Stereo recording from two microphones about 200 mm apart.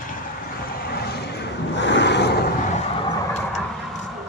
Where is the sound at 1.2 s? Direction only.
60° left (ahead or behind).